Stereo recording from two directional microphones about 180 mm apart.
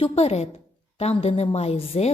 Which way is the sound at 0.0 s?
35° left (ahead or behind).